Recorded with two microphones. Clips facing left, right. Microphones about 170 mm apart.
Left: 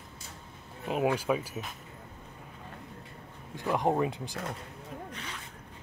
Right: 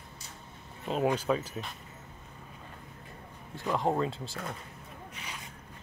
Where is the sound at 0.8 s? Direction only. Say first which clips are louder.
Even; 10° left (ahead or behind).